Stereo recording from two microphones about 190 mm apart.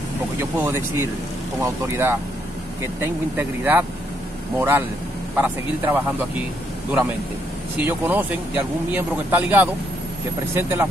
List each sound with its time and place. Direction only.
0.4 s speech: 10° right (ahead or behind)
7.8 s speech: 10° right (ahead or behind)